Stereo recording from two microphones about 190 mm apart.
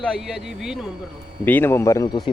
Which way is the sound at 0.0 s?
Centre (ahead or behind).